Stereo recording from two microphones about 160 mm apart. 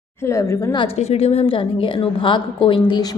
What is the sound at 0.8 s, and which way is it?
A woman's voice, 40° left (ahead or behind).